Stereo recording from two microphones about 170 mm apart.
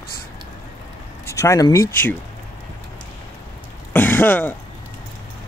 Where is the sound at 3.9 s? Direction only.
10° left (ahead or behind).